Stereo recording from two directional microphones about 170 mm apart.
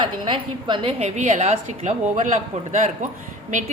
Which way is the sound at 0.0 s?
30° right (ahead or behind).